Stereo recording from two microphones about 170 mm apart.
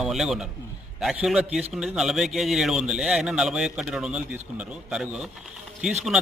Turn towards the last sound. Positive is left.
turn(degrees=0)  # may be behind; listen again after turning